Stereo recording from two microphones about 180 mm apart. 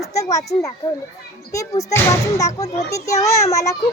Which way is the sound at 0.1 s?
15° left (ahead or behind).